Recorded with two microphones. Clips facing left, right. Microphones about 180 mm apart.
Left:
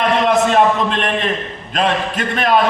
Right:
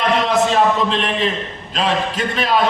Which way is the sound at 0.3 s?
55° left (ahead or behind).